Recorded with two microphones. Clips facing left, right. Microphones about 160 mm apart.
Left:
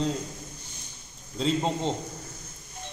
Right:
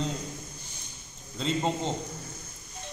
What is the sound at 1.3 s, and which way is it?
Speech, centre (ahead or behind).